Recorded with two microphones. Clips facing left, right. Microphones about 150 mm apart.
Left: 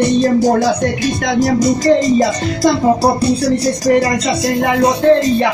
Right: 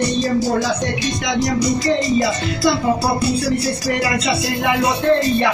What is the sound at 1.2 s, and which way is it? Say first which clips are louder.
Music: left 6 dB; 50° left (ahead or behind).